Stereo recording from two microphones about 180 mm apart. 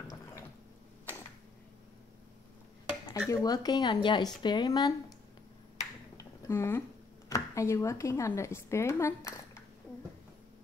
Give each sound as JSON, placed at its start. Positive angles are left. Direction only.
{"t": 3.3, "sound": "speech", "side_deg": 20}
{"t": 6.1, "sound": "a sound", "side_deg": 15}
{"t": 7.2, "sound": "a woman's voice", "side_deg": 15}